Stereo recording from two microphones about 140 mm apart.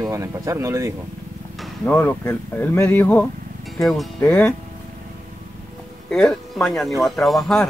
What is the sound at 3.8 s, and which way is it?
Speech, centre (ahead or behind).